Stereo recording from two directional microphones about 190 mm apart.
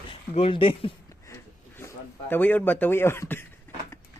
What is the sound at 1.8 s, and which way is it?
Speech, 10° left (ahead or behind).